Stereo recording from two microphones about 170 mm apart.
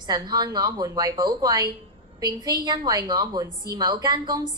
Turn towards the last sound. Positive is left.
turn(degrees=-25)  # may be behind; listen again after turning